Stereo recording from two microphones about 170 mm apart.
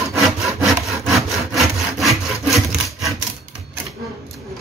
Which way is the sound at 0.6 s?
Centre (ahead or behind).